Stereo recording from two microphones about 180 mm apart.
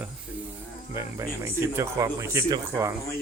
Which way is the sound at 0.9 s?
15° right (ahead or behind).